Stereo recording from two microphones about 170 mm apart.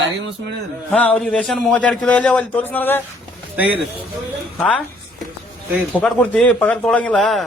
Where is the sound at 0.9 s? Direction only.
5° left (ahead or behind).